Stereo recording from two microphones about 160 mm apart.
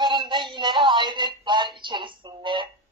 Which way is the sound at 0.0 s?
30° right (ahead or behind).